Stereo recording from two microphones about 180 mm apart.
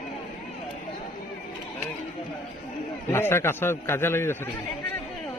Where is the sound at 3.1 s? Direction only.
15° left (ahead or behind).